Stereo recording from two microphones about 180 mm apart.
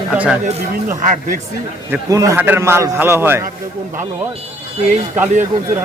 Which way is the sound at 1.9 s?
20° right (ahead or behind).